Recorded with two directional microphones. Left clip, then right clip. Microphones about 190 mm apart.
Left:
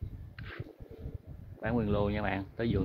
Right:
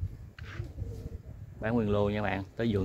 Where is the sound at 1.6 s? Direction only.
Centre (ahead or behind).